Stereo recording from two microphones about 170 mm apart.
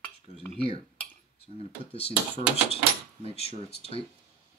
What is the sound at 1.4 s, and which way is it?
Speech, 35° left (ahead or behind).